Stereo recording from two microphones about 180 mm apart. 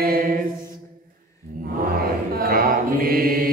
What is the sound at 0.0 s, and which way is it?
Mantra, 55° right (ahead or behind).